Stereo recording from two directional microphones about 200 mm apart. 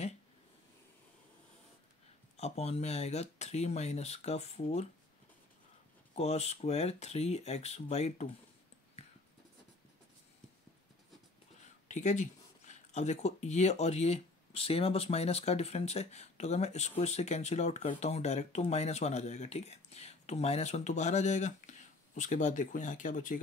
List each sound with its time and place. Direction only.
2.3 s speech: 30° left (ahead or behind)
6.1 s speech: 30° left (ahead or behind)
11.9 s speech: 35° left (ahead or behind)